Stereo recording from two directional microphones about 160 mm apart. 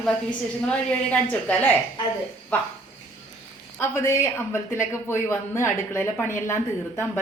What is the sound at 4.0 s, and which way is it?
Speech, 15° left (ahead or behind).